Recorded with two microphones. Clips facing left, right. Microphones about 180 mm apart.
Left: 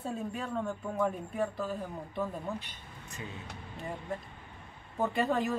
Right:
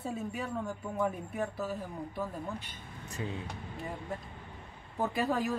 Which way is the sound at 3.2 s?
30° right (ahead or behind).